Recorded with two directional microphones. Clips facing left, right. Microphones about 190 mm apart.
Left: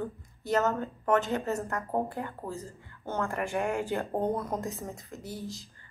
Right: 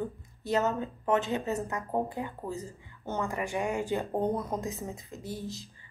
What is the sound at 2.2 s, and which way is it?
Speech, 15° right (ahead or behind).